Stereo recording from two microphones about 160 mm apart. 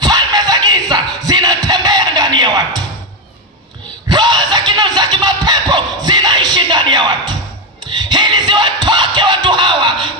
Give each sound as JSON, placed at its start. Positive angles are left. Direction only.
{"t": 0.0, "sound": "music", "side_deg": -25}
{"t": 4.1, "sound": "a sound", "side_deg": -25}
{"t": 7.9, "sound": "music", "side_deg": -30}